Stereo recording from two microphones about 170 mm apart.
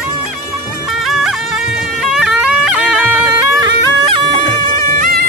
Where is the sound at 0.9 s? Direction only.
Centre (ahead or behind).